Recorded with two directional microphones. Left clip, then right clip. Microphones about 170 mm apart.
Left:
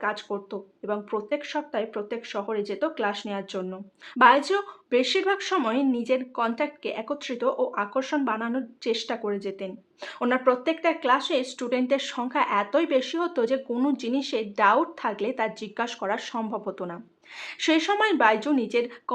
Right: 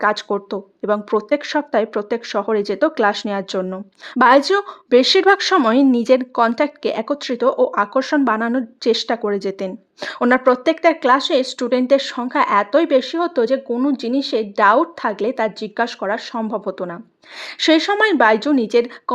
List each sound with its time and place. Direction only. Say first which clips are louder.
0.0 s speech: right 11 dB; 60° right (ahead or behind)